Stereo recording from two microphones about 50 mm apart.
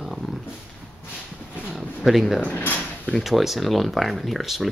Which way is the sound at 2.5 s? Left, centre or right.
Left.